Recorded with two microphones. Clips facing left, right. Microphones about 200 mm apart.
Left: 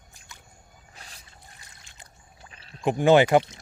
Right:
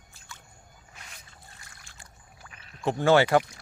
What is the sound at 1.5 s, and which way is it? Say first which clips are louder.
Pour: even; 20° left (ahead or behind).